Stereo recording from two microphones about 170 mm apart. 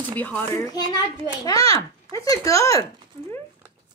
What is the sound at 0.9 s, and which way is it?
A woman's voice, 20° left (ahead or behind).